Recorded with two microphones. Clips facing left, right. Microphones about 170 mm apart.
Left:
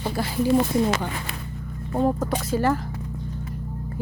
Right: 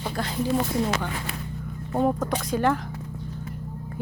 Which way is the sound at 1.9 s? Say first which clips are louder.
Left 1 dB; 5° left (ahead or behind).